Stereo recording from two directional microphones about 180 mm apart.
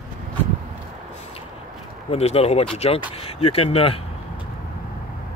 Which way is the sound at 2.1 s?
35° left (ahead or behind).